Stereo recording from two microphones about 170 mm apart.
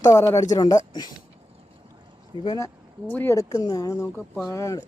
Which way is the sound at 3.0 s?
10° left (ahead or behind).